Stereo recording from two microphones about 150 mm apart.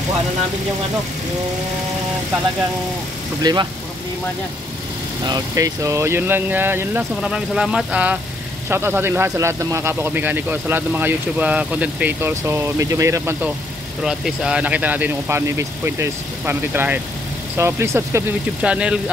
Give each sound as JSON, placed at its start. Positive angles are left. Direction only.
{"t": 3.4, "sound": "speech", "side_deg": -25}
{"t": 5.2, "sound": "speech", "side_deg": -25}
{"t": 14.0, "sound": "speech", "side_deg": -5}